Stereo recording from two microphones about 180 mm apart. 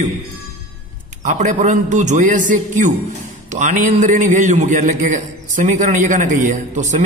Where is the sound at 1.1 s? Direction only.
45° right (ahead or behind).